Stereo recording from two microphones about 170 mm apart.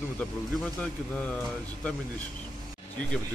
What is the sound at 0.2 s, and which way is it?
A man's voice, 5° left (ahead or behind).